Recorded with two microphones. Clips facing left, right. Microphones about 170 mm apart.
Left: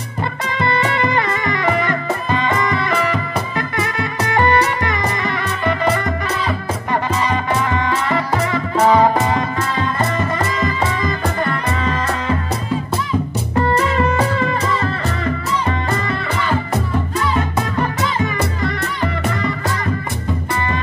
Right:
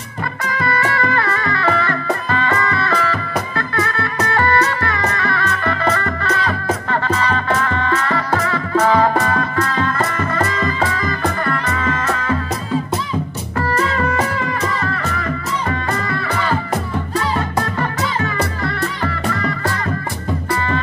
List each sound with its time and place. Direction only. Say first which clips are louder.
0.5 s music: left 1 dB; 20° left (ahead or behind)
13.6 s music: left 2 dB; 20° left (ahead or behind)
18.2 s music: left 1 dB; 15° left (ahead or behind)